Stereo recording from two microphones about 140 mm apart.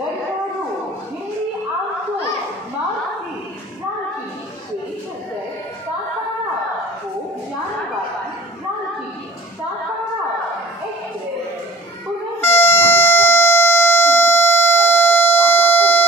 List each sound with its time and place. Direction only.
12.6 s air horn: 15° left (ahead or behind)